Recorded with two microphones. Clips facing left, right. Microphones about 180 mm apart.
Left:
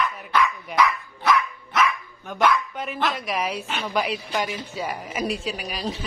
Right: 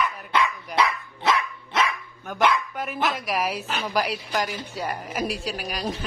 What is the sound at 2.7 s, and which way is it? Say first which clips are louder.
A woman's voice: even; centre (ahead or behind).